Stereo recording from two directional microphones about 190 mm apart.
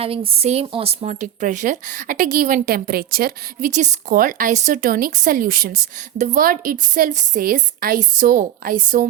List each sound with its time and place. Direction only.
0.0 s speech: 30° right (ahead or behind); by 9.0 s 45° right (ahead or behind)